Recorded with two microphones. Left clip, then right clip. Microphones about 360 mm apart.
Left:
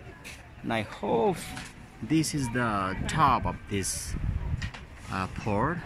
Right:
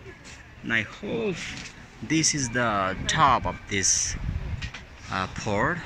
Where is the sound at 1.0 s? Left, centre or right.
Left.